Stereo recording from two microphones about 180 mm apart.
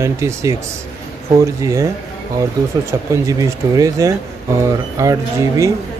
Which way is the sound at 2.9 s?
15° right (ahead or behind).